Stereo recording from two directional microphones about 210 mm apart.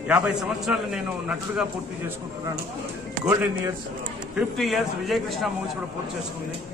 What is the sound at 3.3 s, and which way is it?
Speech, 15° right (ahead or behind).